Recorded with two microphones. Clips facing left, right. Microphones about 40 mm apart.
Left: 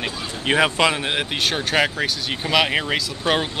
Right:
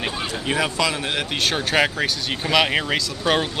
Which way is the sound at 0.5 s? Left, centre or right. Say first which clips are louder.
Left 5 dB; left.